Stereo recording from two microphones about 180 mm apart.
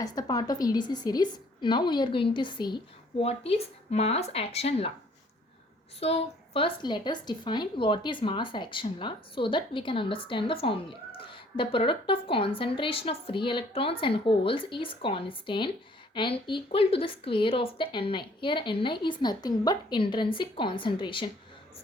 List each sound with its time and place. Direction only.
0.0 s speech: 20° left (ahead or behind)
6.0 s speech: 35° left (ahead or behind)